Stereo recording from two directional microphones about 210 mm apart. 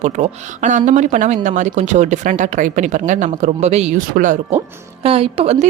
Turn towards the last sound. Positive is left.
turn(degrees=-30)  # may be behind; listen again after turning